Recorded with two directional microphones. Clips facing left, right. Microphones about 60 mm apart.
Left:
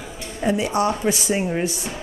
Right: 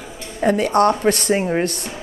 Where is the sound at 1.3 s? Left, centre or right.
Right.